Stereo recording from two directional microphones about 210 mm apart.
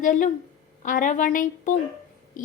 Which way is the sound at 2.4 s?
40° left (ahead or behind).